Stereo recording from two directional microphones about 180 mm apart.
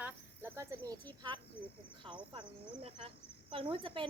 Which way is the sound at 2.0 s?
25° right (ahead or behind).